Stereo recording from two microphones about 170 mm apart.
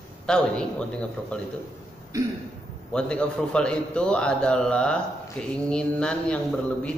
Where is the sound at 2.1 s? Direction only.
20° right (ahead or behind).